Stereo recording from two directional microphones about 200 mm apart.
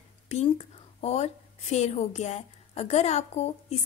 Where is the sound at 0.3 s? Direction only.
30° left (ahead or behind).